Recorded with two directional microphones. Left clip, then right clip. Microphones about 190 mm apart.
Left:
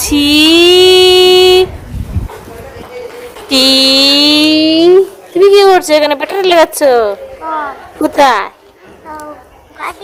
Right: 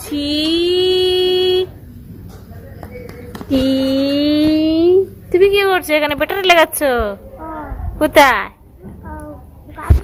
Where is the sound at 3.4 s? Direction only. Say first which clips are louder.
Left 9 dB; 15° left (ahead or behind).